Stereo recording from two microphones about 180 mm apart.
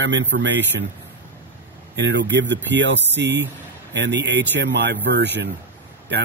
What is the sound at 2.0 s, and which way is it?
Speech, 75° right (ahead or behind).